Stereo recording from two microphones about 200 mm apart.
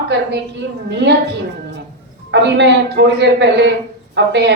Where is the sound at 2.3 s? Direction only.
60° right (ahead or behind).